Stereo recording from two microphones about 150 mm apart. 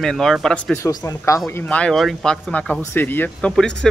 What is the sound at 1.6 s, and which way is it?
Speech, 10° left (ahead or behind).